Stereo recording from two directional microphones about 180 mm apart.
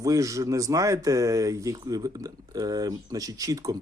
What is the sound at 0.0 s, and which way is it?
Speech, 20° right (ahead or behind).